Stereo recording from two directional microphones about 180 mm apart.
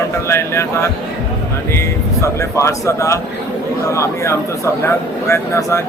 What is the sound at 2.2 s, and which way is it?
Speech, 15° left (ahead or behind).